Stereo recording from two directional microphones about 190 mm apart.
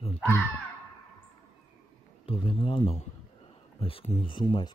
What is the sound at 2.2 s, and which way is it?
Speech, 30° left (ahead or behind).